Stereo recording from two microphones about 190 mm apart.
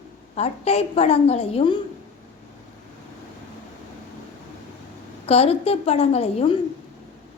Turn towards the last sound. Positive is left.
turn(degrees=30)  # may be behind; listen again after turning